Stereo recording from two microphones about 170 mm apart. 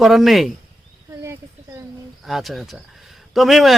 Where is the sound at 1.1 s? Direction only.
15° right (ahead or behind).